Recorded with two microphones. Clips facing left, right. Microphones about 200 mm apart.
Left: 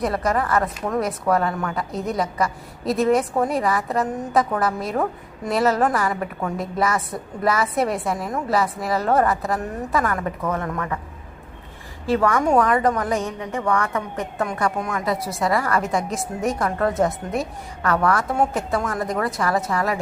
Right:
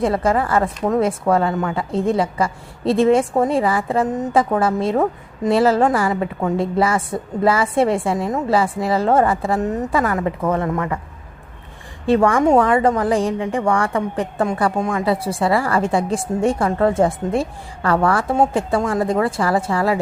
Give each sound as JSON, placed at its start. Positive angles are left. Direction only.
{"t": 0.0, "sound": "a woman's voice", "side_deg": -25}
{"t": 12.0, "sound": "a woman's voice", "side_deg": -25}